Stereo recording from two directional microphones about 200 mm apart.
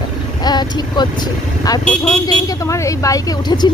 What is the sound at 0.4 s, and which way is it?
Speech, 20° left (ahead or behind).